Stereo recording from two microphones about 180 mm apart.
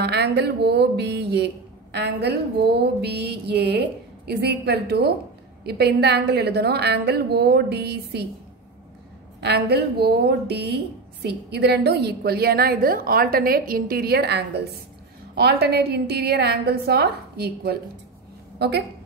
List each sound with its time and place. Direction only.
0.0 s music: 65° right (ahead or behind)
9.4 s music: 65° right (ahead or behind)
18.6 s a woman's voice: 65° right (ahead or behind)